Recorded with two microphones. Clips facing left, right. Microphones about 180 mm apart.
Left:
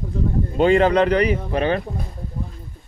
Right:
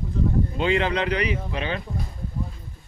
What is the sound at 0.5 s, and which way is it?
Speech, 45° left (ahead or behind).